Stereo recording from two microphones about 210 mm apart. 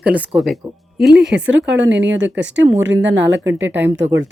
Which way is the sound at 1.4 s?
60° right (ahead or behind).